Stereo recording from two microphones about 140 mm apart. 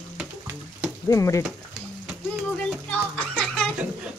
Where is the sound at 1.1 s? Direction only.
20° left (ahead or behind).